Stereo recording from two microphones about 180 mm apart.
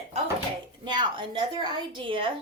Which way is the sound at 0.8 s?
25° right (ahead or behind).